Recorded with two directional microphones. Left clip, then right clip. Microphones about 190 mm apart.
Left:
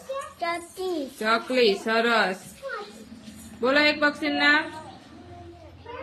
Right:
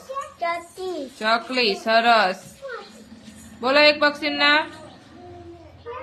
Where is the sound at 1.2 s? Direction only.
15° right (ahead or behind).